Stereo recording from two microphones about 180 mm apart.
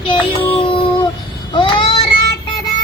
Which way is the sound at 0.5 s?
25° left (ahead or behind).